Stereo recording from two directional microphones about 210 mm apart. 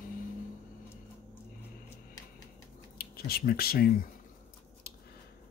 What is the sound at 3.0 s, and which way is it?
Speech, 45° left (ahead or behind).